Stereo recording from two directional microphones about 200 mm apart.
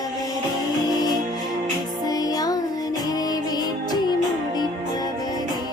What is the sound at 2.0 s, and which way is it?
Music, 20° left (ahead or behind).